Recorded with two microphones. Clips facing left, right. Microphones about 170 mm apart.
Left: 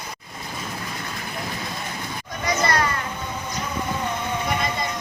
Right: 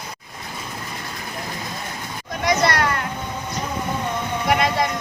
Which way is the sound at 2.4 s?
75° right (ahead or behind).